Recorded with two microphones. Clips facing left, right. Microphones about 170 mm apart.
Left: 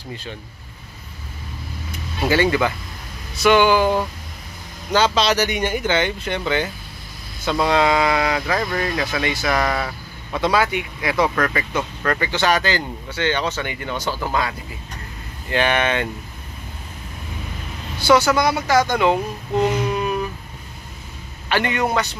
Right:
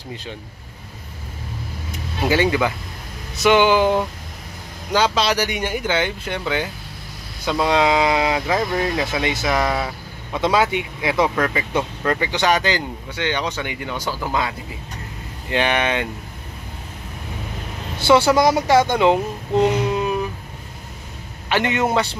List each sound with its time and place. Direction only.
0.1 s speech: 20° right (ahead or behind)
2.2 s a man's voice: 15° right (ahead or behind)
4.9 s speech: 10° right (ahead or behind)
15.5 s speech: 15° right (ahead or behind)
17.9 s speech: 25° right (ahead or behind)
21.5 s a man's voice: 20° right (ahead or behind)